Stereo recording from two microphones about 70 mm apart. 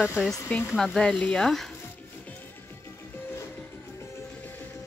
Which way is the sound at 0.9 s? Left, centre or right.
Centre.